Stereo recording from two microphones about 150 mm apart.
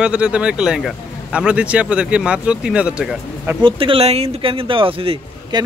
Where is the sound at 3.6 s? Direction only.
35° right (ahead or behind).